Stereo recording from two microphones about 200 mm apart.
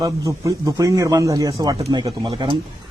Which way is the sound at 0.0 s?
15° right (ahead or behind).